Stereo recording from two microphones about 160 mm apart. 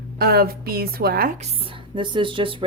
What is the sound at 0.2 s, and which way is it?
Speech, 75° right (ahead or behind).